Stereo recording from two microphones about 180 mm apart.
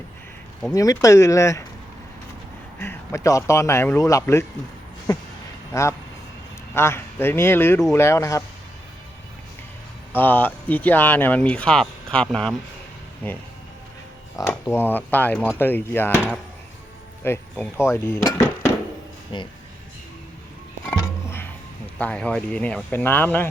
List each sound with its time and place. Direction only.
0.7 s speech: 20° left (ahead or behind)
2.7 s speech: 15° left (ahead or behind)
5.7 s speech: 15° left (ahead or behind)
10.1 s speech: 10° left (ahead or behind)
16.1 s speech: centre (ahead or behind)
17.2 s speech: 15° left (ahead or behind)
19.3 s speech: 25° left (ahead or behind)
21.2 s music: 10° left (ahead or behind)
21.9 s speech: 5° left (ahead or behind)